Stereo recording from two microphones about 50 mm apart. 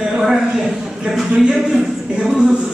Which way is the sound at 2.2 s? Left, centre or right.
Centre.